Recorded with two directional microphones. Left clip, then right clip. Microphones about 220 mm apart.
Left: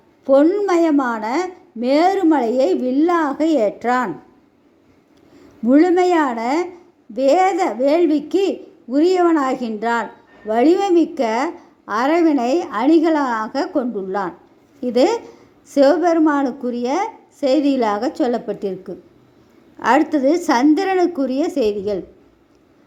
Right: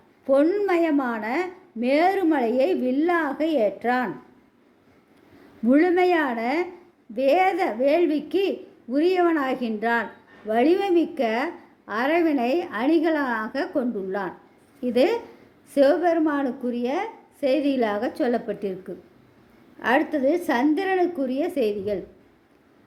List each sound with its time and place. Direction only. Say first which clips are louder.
0.3 s a woman's voice: left 6 dB; 10° left (ahead or behind)
5.6 s a woman's voice: left 5 dB; 10° left (ahead or behind)
19.8 s a woman's voice: left 6 dB; 20° left (ahead or behind)